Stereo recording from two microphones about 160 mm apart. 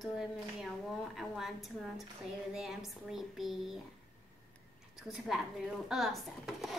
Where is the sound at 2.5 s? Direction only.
Centre (ahead or behind).